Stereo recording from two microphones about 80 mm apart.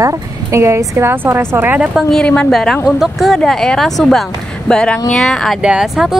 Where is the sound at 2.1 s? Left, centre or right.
Centre.